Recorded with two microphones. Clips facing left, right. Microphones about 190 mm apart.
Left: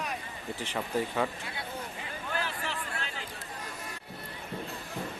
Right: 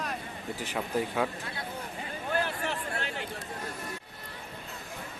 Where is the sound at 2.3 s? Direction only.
55° right (ahead or behind).